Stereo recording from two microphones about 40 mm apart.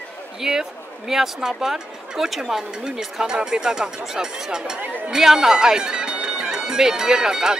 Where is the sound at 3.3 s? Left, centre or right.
Centre.